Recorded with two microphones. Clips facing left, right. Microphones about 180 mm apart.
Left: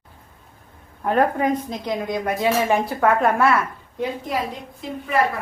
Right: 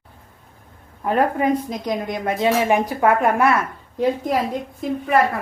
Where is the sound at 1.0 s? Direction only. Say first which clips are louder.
Even; 5° right (ahead or behind).